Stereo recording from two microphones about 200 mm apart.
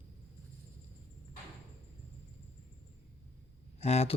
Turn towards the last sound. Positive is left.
turn(degrees=30)  # may be behind; listen again after turning